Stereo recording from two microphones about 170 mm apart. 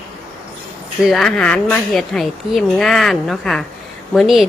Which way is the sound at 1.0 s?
Centre (ahead or behind).